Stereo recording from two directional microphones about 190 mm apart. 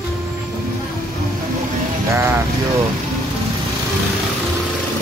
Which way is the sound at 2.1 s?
15° right (ahead or behind).